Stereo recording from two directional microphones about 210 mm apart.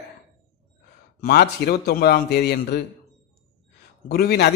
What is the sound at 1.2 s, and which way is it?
A man's voice, 50° left (ahead or behind).